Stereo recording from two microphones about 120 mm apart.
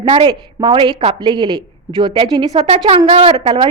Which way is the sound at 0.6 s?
40° right (ahead or behind).